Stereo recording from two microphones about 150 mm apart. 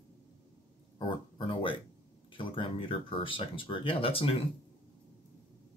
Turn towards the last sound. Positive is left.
turn(degrees=40)  # may be behind; listen again after turning